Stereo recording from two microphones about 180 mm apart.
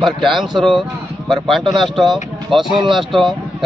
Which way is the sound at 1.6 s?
25° right (ahead or behind).